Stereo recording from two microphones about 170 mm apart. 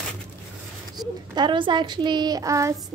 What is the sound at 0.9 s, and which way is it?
A woman's voice, 25° right (ahead or behind).